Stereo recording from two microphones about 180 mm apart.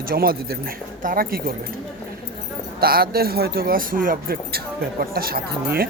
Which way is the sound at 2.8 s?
55° right (ahead or behind).